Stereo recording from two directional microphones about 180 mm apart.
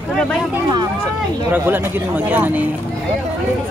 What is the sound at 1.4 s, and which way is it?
Speech, 10° right (ahead or behind).